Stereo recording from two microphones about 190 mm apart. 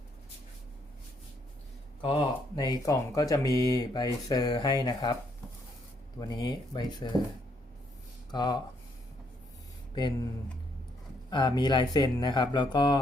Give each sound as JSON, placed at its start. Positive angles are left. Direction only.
{"t": 2.6, "sound": "speech", "side_deg": 20}
{"t": 6.1, "sound": "speech", "side_deg": 20}
{"t": 8.3, "sound": "speech", "side_deg": 20}
{"t": 9.9, "sound": "speech", "side_deg": 25}
{"t": 11.3, "sound": "speech", "side_deg": 25}